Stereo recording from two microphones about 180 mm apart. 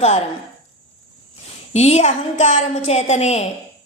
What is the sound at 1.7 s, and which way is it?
A woman's voice, 35° left (ahead or behind).